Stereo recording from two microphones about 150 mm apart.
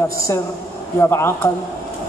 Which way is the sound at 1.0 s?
15° left (ahead or behind).